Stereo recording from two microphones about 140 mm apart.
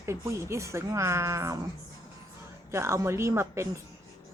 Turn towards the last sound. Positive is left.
turn(degrees=-20)  # may be behind; listen again after turning